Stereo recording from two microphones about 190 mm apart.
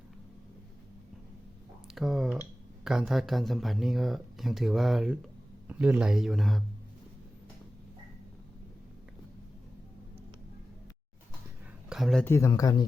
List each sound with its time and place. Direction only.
2.0 s speech: centre (ahead or behind)
11.9 s a sound: centre (ahead or behind)
12.2 s speech: 15° left (ahead or behind)